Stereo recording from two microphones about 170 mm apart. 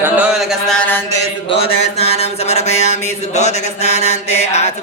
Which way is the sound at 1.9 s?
35° left (ahead or behind).